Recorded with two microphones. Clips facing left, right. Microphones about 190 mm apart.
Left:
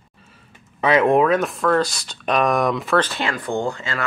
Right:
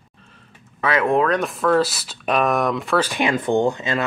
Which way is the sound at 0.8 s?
20° left (ahead or behind).